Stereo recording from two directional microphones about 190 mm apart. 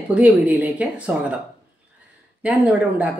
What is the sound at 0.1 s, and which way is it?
A woman's voice, 10° right (ahead or behind).